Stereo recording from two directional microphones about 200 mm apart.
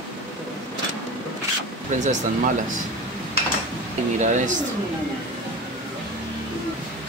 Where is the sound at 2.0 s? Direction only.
40° right (ahead or behind).